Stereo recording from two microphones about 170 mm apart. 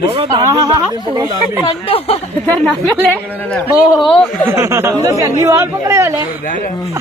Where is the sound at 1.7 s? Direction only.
35° left (ahead or behind).